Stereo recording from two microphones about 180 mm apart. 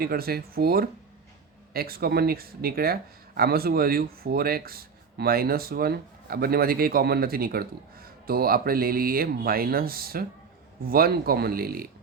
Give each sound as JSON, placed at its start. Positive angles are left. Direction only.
{"t": 0.0, "sound": "speech", "side_deg": -55}